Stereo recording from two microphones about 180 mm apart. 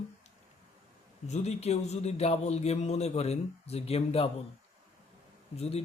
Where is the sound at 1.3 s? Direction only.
35° left (ahead or behind).